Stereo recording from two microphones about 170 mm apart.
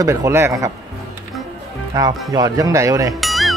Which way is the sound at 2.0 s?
25° right (ahead or behind).